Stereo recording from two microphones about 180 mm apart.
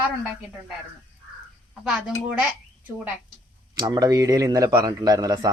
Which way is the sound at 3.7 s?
25° right (ahead or behind).